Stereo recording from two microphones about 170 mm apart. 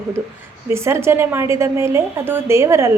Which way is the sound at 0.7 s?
15° right (ahead or behind).